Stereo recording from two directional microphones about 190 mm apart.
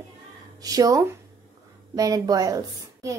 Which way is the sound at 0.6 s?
20° right (ahead or behind).